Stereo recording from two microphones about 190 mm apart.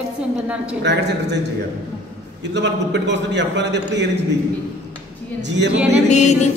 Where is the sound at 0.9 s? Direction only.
65° right (ahead or behind).